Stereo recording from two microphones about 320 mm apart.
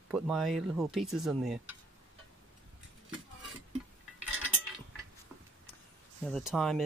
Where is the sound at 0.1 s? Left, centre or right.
Centre.